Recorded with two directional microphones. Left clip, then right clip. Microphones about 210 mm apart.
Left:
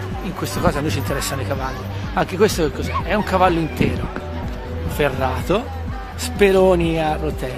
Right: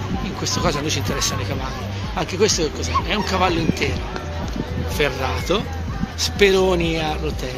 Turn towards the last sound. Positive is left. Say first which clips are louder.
# left 3 dB
turn(degrees=40)  # may be behind; listen again after turning